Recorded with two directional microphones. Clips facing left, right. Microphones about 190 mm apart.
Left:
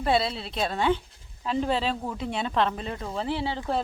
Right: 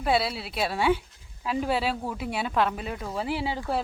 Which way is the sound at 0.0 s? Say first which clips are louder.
Left 1 dB; 5° right (ahead or behind).